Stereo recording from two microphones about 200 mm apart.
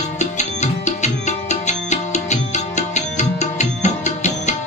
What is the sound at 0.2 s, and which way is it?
Music, 35° left (ahead or behind).